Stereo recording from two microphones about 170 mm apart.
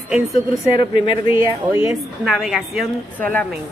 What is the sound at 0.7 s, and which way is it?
Speech, 30° left (ahead or behind).